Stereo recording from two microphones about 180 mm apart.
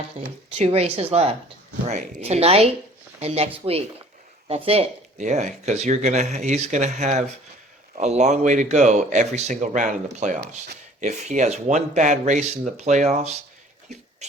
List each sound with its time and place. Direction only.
0.2 s speech: 40° right (ahead or behind)